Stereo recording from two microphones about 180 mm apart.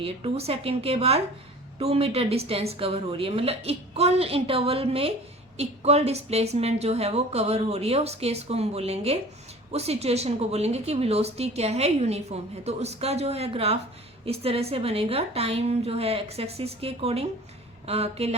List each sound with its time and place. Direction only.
0.0 s a woman's voice: 35° right (ahead or behind)